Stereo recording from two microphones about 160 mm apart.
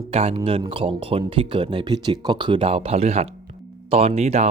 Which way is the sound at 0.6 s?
30° right (ahead or behind).